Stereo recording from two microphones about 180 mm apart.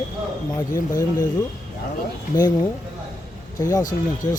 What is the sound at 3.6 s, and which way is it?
Speech, 20° left (ahead or behind).